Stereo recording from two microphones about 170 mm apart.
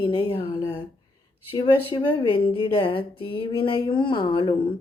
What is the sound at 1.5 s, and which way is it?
Speech, 30° left (ahead or behind).